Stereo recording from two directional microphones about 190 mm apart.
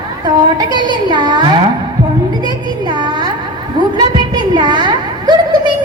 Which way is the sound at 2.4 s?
25° right (ahead or behind).